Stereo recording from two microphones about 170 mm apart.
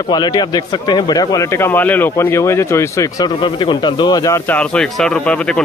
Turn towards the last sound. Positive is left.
turn(degrees=5)  # may be behind; listen again after turning